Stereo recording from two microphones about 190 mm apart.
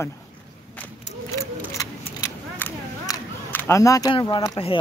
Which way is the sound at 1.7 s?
15° left (ahead or behind).